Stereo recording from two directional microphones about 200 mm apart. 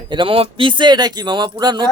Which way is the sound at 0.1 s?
25° right (ahead or behind).